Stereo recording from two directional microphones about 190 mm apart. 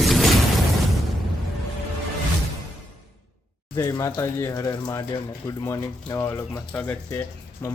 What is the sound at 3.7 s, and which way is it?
Speech, 15° left (ahead or behind).